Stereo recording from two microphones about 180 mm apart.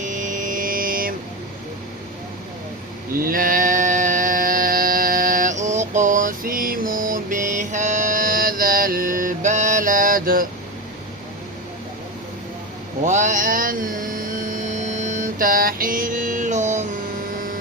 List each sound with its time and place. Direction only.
0.0 s mantra: 45° right (ahead or behind)
3.2 s mantra: 50° right (ahead or behind)
13.1 s music: 45° right (ahead or behind)